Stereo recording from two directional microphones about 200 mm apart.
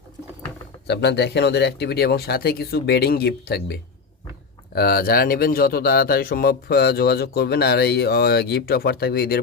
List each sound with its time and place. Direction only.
0.9 s a man's voice: 55° left (ahead or behind)